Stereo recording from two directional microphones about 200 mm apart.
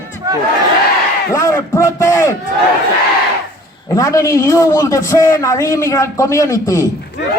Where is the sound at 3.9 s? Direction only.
15° left (ahead or behind).